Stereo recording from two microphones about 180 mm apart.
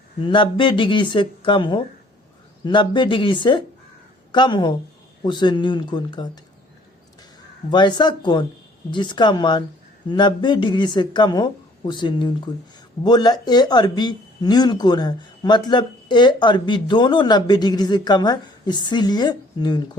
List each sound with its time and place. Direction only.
0.2 s a woman's voice: 30° left (ahead or behind)
7.7 s speech: 25° left (ahead or behind)